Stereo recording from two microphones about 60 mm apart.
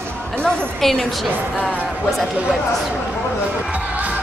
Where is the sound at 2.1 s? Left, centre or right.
Centre.